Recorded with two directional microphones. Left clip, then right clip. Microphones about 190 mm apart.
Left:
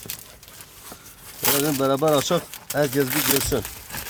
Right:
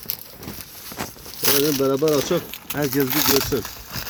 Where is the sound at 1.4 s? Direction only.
10° left (ahead or behind).